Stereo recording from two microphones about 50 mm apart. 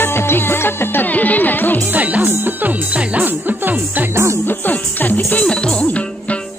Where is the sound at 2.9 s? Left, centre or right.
Right.